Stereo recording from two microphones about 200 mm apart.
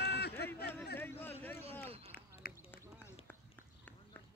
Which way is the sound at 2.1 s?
50° left (ahead or behind).